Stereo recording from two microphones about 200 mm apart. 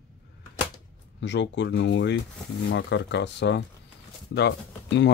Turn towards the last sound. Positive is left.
turn(degrees=60)  # may be behind; listen again after turning